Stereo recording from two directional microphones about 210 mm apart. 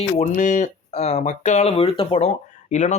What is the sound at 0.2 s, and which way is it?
Speech, 35° left (ahead or behind).